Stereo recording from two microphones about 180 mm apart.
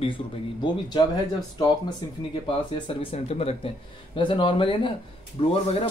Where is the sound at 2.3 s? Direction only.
30° left (ahead or behind).